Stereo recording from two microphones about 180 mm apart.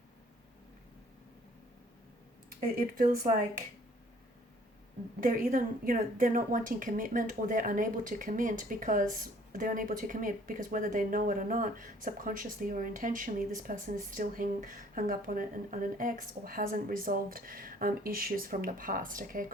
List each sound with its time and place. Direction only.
5.2 s speech: 45° right (ahead or behind)